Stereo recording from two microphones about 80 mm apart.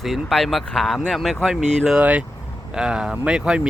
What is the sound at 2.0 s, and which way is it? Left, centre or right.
Speech, centre.